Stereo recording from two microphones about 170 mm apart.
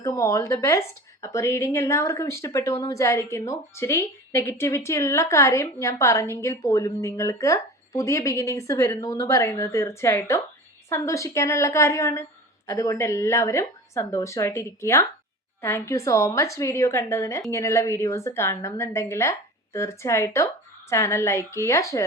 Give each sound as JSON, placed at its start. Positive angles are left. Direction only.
{"t": 0.0, "sound": "a woman's voice", "side_deg": 20}